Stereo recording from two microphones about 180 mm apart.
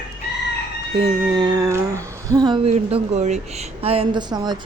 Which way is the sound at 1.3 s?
20° right (ahead or behind).